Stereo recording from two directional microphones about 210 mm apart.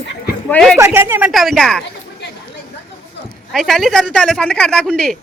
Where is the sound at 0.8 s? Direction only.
10° right (ahead or behind).